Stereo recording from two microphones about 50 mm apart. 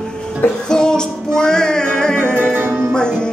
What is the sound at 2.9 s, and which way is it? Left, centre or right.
Music, centre.